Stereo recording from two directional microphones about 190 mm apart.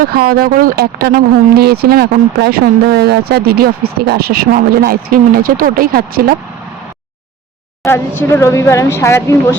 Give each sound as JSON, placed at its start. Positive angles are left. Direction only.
{"t": 0.0, "sound": "speech", "side_deg": -50}
{"t": 7.9, "sound": "speech", "side_deg": 10}